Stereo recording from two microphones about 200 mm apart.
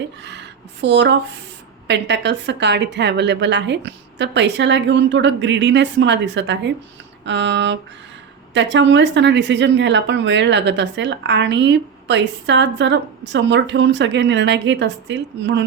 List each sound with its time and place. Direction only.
0.2 s a woman's voice: 60° right (ahead or behind)